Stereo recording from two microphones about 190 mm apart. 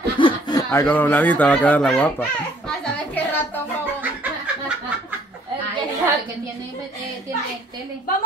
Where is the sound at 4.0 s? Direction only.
10° right (ahead or behind).